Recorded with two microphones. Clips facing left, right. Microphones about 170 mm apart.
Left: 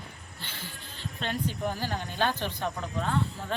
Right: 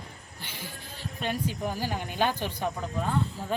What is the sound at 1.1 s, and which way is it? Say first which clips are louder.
Speech: right 1 dB; 10° right (ahead or behind).